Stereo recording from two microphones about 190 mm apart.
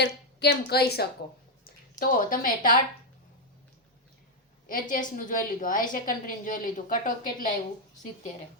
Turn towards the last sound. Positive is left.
turn(degrees=45)  # may be behind; listen again after turning